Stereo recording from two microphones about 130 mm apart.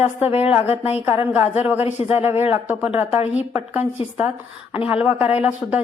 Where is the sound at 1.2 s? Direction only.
15° right (ahead or behind).